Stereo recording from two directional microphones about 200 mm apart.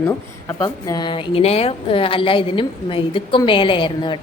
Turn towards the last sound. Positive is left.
turn(degrees=25)  # may be behind; listen again after turning